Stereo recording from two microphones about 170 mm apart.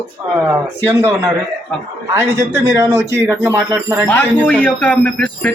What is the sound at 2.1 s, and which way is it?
A man's voice, 15° right (ahead or behind).